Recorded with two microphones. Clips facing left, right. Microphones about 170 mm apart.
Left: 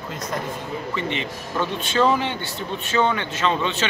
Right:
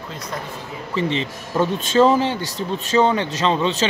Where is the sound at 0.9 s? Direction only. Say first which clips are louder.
Right 8 dB; 35° right (ahead or behind).